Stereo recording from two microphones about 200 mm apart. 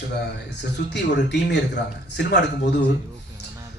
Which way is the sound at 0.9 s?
60° left (ahead or behind).